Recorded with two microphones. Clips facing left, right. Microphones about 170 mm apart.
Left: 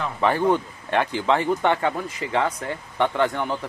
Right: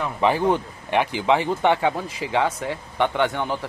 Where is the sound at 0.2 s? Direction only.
15° right (ahead or behind).